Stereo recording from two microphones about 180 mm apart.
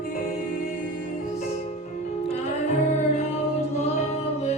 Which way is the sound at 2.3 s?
40° left (ahead or behind).